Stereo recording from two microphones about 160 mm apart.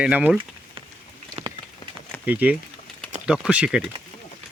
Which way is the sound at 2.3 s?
10° right (ahead or behind).